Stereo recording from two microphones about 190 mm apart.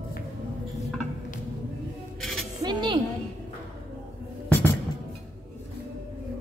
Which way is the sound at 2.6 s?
25° right (ahead or behind).